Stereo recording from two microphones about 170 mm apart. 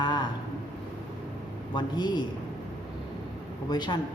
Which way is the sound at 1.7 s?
25° left (ahead or behind).